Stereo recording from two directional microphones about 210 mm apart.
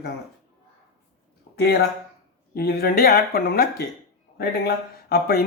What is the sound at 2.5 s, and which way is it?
Speech, 45° left (ahead or behind).